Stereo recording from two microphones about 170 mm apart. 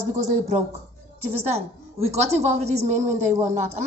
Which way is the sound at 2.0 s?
40° right (ahead or behind).